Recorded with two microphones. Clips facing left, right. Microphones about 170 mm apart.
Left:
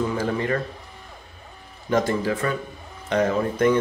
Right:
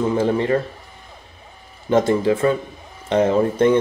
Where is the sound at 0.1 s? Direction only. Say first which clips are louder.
Right 6 dB; 25° right (ahead or behind).